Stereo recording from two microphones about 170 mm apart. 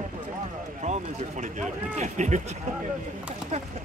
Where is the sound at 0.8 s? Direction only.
45° right (ahead or behind).